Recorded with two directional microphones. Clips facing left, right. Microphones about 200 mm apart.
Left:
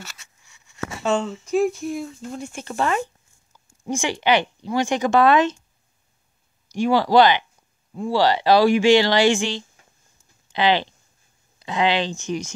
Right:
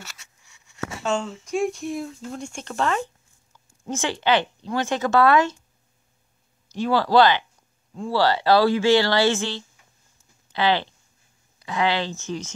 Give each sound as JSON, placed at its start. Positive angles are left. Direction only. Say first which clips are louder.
{"t": 1.0, "sound": "speech", "louder": "left 4 dB", "side_deg": 5}
{"t": 6.7, "sound": "speech", "louder": "left 2 dB", "side_deg": 15}